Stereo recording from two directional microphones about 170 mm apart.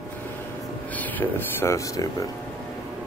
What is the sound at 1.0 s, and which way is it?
Speech, 10° left (ahead or behind).